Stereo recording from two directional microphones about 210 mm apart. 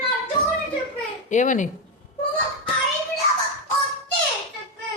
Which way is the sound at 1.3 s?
35° left (ahead or behind).